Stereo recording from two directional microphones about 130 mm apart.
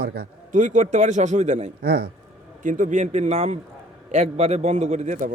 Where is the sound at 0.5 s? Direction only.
80° right; by 1.7 s 60° right (ahead or behind).